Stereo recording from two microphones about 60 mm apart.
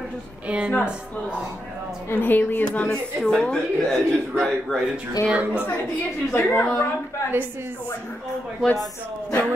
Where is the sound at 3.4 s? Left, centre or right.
Centre.